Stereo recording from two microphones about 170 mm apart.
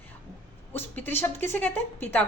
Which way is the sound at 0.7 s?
10° left (ahead or behind).